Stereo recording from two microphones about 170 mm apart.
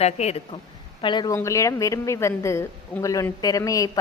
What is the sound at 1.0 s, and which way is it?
A woman's voice, 25° left (ahead or behind).